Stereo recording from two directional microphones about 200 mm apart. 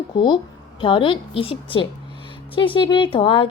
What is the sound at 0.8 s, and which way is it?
A woman's voice, 25° left (ahead or behind).